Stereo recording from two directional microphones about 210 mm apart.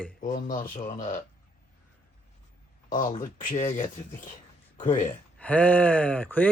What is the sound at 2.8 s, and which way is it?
Speech, 40° left (ahead or behind).